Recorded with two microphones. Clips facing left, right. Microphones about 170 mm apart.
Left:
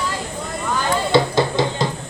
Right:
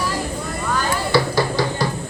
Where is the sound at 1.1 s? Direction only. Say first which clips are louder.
Left 2 dB; 20° left (ahead or behind).